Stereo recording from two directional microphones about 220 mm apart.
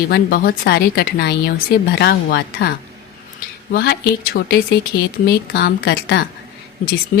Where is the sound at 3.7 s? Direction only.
45° left (ahead or behind).